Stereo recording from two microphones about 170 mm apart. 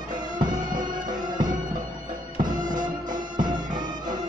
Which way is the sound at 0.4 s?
25° right (ahead or behind).